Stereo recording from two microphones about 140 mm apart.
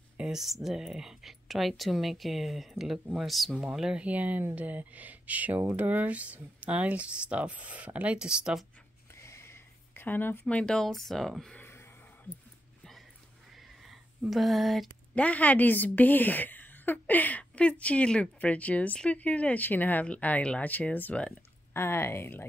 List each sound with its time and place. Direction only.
0.2 s speech: 5° right (ahead or behind)
9.1 s a sound: 20° left (ahead or behind)
10.4 s speech: 5° left (ahead or behind)
13.8 s a woman's voice: centre (ahead or behind); by 22.5 s 15° left (ahead or behind)